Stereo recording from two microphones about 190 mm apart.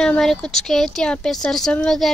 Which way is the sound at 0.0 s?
5° left (ahead or behind).